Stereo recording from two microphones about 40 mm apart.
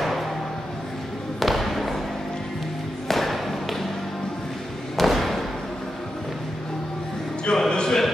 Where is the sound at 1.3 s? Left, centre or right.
Centre.